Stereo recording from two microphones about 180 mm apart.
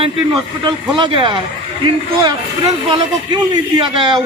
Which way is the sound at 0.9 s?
25° right (ahead or behind).